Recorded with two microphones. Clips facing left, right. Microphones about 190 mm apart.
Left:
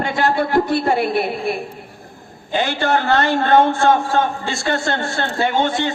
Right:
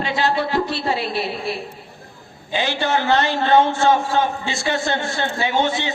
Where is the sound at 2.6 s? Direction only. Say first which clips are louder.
Left 2 dB; 50° left (ahead or behind).